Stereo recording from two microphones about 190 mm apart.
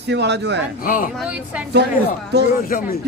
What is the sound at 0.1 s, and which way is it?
Speech, 60° right (ahead or behind).